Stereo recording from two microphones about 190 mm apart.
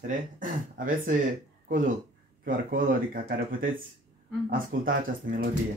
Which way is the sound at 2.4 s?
50° right (ahead or behind).